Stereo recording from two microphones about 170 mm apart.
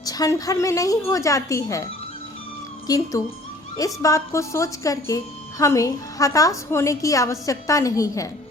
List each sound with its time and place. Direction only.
0.0 s a woman's voice: 20° left (ahead or behind)